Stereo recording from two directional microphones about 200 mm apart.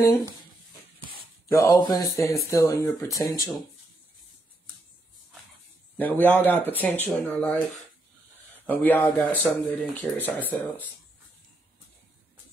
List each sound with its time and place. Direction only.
1.5 s speech: 15° left (ahead or behind)
5.9 s speech: 10° left (ahead or behind)
8.6 s speech: 10° left (ahead or behind)